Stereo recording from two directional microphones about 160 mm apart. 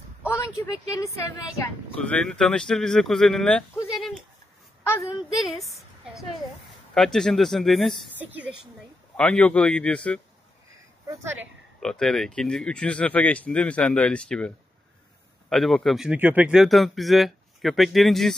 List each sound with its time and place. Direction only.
0.4 s speech: 20° left (ahead or behind)
2.0 s speech: 5° left (ahead or behind)
5.3 s a woman's voice: centre (ahead or behind)
8.2 s a woman's voice: 10° right (ahead or behind)
9.1 s speech: 5° left (ahead or behind)
11.1 s a woman's voice: 15° right (ahead or behind)
11.8 s speech: 5° left (ahead or behind)
15.5 s speech: centre (ahead or behind)